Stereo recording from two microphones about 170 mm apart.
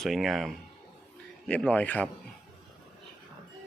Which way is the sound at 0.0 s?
Centre (ahead or behind).